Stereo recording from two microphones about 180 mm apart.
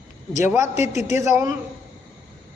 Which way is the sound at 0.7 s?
40° left (ahead or behind).